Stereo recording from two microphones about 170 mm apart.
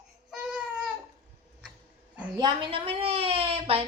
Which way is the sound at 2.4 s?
25° right (ahead or behind).